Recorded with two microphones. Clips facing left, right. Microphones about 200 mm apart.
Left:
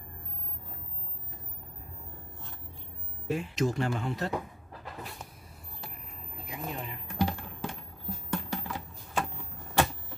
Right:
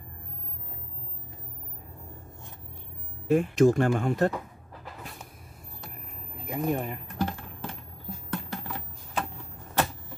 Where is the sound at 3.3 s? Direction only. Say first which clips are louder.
Right 9 dB; 50° right (ahead or behind).